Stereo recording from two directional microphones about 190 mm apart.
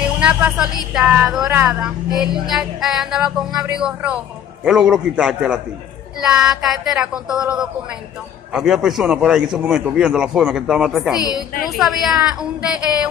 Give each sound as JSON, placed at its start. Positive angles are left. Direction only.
{"t": 0.2, "sound": "a woman's voice", "side_deg": -5}
{"t": 11.1, "sound": "a woman's voice", "side_deg": 20}
{"t": 11.6, "sound": "a woman's voice", "side_deg": 0}